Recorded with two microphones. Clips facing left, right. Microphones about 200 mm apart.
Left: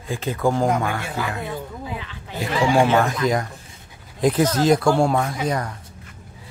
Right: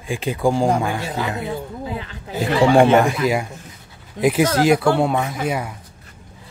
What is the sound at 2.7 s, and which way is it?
Speech, 60° right (ahead or behind).